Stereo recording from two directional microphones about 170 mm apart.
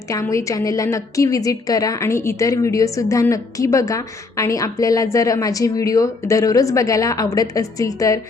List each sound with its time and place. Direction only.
0.1 s a woman's voice: 20° left (ahead or behind)